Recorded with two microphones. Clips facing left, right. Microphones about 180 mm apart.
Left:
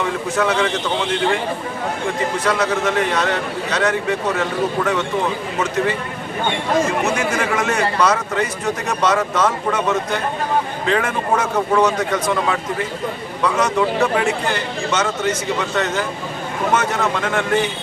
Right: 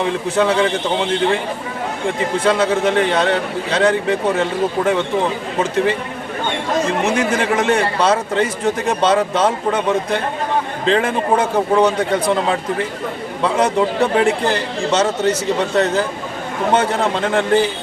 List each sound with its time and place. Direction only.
0.0 s a man's voice: 30° right (ahead or behind)
2.4 s speech: 30° right (ahead or behind)
7.0 s a man's voice: 30° right (ahead or behind)